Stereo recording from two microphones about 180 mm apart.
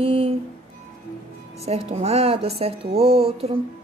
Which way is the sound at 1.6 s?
35° right (ahead or behind).